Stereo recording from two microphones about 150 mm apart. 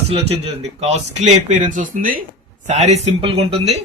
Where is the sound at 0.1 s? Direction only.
45° right (ahead or behind); by 2.2 s 65° right (ahead or behind).